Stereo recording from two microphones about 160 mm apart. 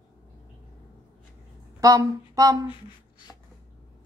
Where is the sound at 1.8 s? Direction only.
20° right (ahead or behind).